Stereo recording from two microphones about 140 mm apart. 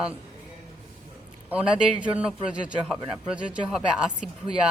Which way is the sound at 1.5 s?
5° right (ahead or behind).